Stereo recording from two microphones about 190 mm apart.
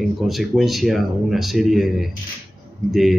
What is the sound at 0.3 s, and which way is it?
A man's voice, centre (ahead or behind).